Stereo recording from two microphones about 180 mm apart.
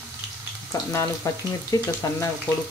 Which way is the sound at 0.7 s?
15° left (ahead or behind).